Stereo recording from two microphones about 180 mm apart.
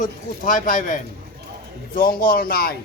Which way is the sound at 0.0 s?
45° left (ahead or behind).